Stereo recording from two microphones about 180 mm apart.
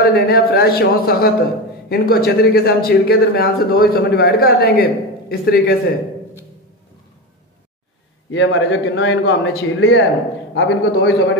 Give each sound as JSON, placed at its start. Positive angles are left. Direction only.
{"t": 0.0, "sound": "speech", "side_deg": 60}
{"t": 8.3, "sound": "a man's voice", "side_deg": 90}